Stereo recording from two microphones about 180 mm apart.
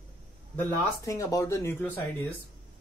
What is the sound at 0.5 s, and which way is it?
Speech, 20° left (ahead or behind).